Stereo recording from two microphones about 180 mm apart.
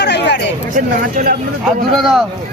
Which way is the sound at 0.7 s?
50° right (ahead or behind).